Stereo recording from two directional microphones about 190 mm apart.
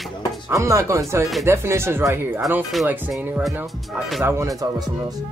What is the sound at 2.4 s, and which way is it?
Speech, centre (ahead or behind).